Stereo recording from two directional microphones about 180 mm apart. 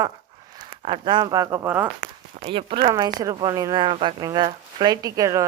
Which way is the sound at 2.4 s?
30° right (ahead or behind).